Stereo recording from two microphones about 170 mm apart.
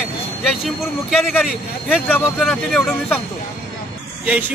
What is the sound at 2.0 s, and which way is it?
Speech, 5° left (ahead or behind).